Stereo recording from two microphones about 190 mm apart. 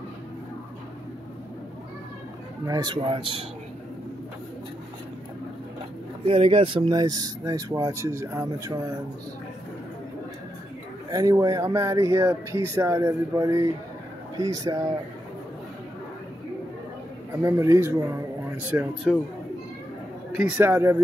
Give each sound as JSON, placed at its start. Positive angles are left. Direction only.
{"t": 2.6, "sound": "speech", "side_deg": -20}
{"t": 6.2, "sound": "speech", "side_deg": -30}
{"t": 11.1, "sound": "speech", "side_deg": -20}
{"t": 17.4, "sound": "speech", "side_deg": -15}
{"t": 20.3, "sound": "speech", "side_deg": -10}